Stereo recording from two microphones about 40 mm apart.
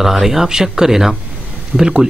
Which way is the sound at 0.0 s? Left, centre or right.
Centre.